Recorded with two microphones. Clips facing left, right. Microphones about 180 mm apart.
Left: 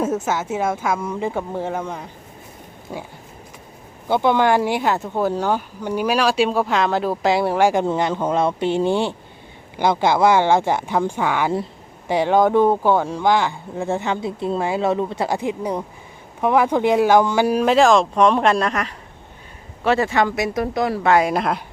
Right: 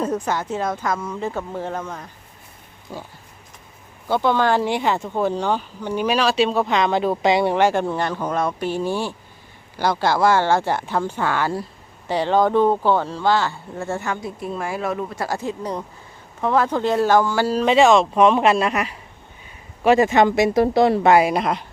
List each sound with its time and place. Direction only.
0.3 s speech: 5° left (ahead or behind)
4.1 s speech: 15° left (ahead or behind)
17.7 s speech: centre (ahead or behind); by 21.1 s 25° right (ahead or behind)
21.1 s speech: 5° right (ahead or behind)